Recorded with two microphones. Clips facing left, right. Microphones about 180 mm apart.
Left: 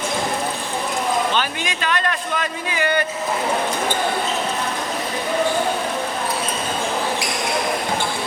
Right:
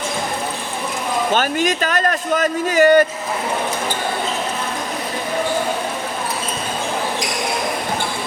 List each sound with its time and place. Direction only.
1.3 s a man's voice: 45° right (ahead or behind)